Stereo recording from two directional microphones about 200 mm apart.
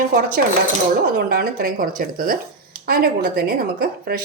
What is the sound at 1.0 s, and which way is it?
A woman's voice, 50° right (ahead or behind).